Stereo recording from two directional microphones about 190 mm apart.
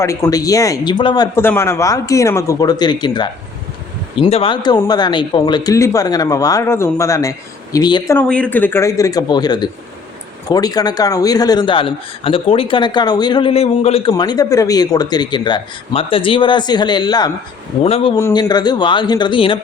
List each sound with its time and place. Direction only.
0.0 s a man's voice: 15° left (ahead or behind)
8.1 s a man's voice: 10° left (ahead or behind); by 18.2 s 30° left (ahead or behind)
18.2 s a man's voice: 20° left (ahead or behind)